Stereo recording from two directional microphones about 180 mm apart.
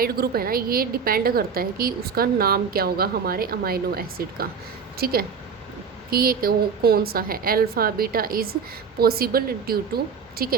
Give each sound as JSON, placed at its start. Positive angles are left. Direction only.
{"t": 0.0, "sound": "a woman's voice", "side_deg": -55}